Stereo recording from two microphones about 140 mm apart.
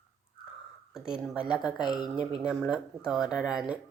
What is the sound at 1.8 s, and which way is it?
Speech, 30° left (ahead or behind).